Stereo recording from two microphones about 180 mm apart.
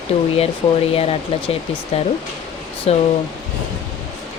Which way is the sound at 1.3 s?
30° left (ahead or behind).